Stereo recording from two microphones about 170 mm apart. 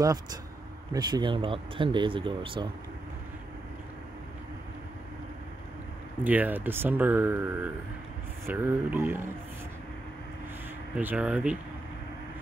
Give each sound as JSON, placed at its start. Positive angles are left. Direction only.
{"t": 0.0, "sound": "speech", "side_deg": -20}
{"t": 6.2, "sound": "speech", "side_deg": -10}
{"t": 11.0, "sound": "speech", "side_deg": -10}